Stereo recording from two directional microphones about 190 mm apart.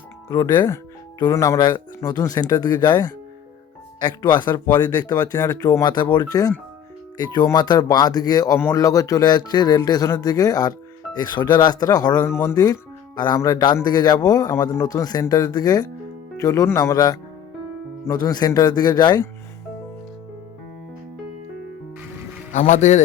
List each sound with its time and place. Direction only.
0.3 s speech: 20° left (ahead or behind)
22.5 s speech: 40° left (ahead or behind)